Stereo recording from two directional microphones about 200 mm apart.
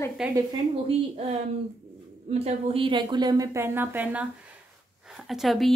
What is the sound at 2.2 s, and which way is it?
A woman's voice, 30° right (ahead or behind).